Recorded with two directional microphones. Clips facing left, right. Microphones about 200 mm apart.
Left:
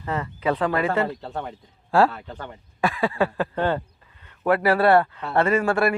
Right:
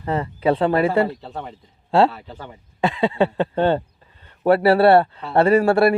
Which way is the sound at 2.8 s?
20° right (ahead or behind).